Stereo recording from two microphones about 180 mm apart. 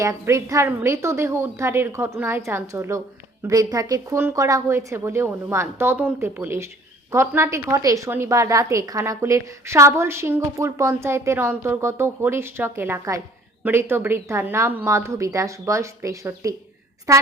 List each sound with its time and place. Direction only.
0.0 s a woman's voice: 15° right (ahead or behind)